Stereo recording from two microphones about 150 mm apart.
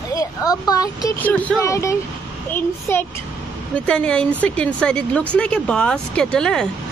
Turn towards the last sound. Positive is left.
turn(degrees=5)  # may be behind; listen again after turning